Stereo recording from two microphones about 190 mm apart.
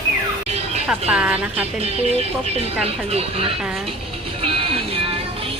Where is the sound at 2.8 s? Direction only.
30° right (ahead or behind).